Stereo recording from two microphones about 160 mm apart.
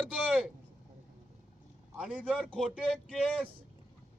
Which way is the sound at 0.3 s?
5° right (ahead or behind).